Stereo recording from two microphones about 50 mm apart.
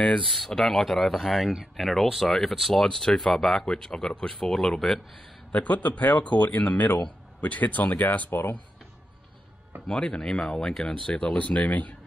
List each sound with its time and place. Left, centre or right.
0.6 s speech: centre
5.5 s speech: left
8.3 s speech: left
9.8 s speech: centre